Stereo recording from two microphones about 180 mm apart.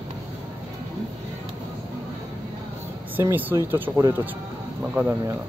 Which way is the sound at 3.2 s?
10° right (ahead or behind).